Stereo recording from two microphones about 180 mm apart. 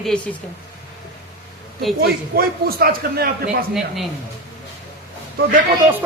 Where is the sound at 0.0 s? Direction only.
5° left (ahead or behind).